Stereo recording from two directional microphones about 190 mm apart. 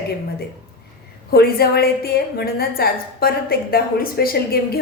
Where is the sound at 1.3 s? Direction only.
55° left (ahead or behind).